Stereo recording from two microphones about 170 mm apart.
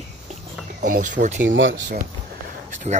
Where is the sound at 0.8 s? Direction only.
50° right (ahead or behind).